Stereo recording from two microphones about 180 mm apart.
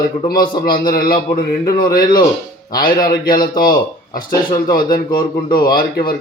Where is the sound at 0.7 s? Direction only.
55° left (ahead or behind).